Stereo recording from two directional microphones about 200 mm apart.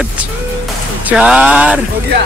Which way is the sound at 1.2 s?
5° right (ahead or behind).